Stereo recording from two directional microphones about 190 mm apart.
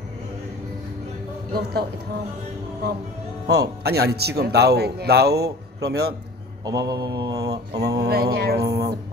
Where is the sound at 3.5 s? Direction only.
60° right (ahead or behind).